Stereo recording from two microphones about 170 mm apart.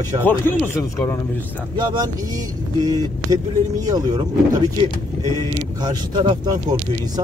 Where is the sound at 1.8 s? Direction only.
25° right (ahead or behind).